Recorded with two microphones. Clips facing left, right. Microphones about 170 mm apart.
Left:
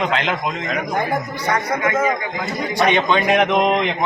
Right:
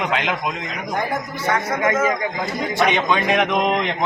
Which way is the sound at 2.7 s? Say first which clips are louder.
Left 2 dB; 5° right (ahead or behind).